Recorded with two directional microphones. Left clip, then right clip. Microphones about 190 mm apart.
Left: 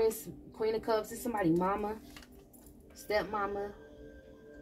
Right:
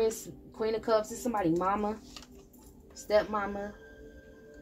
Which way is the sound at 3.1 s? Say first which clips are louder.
Right 5 dB; 30° right (ahead or behind).